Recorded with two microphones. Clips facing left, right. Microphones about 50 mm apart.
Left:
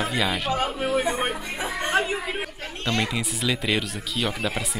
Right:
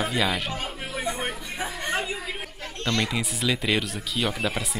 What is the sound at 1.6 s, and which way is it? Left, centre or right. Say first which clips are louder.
Chuckle: left 2 dB; left.